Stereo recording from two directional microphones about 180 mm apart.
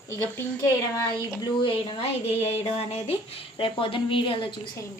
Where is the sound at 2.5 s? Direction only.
35° left (ahead or behind).